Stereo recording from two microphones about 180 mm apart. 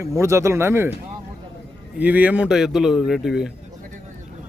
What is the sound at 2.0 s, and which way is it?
Speech, 10° right (ahead or behind).